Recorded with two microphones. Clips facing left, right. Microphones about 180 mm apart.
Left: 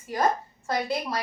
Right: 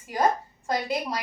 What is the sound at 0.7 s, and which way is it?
Speech, 15° right (ahead or behind).